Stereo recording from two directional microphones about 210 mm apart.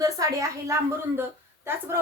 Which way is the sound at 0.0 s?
15° right (ahead or behind).